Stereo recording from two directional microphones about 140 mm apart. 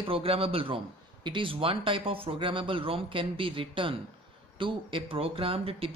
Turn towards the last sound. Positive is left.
turn(degrees=-40)  # may be behind; listen again after turning